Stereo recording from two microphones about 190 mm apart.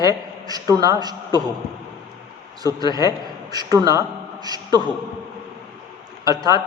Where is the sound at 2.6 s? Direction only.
20° right (ahead or behind).